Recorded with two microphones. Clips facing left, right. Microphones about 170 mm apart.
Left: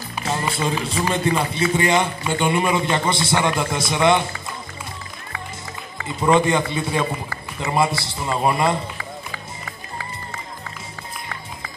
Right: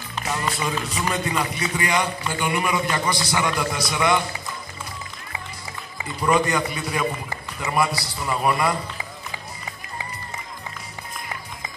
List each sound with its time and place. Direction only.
0.2 s run: 30° left (ahead or behind)
0.6 s a man's voice: 30° left (ahead or behind)
6.0 s a man's voice: 25° left (ahead or behind)